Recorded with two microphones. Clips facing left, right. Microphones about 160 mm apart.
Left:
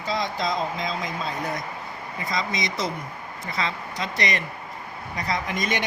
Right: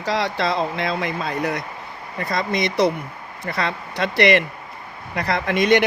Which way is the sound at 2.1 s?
60° right (ahead or behind).